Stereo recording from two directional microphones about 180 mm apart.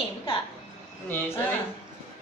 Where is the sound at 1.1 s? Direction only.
10° left (ahead or behind).